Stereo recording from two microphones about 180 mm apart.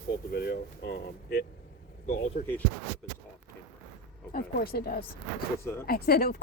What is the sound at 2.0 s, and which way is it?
Speech, 45° left (ahead or behind).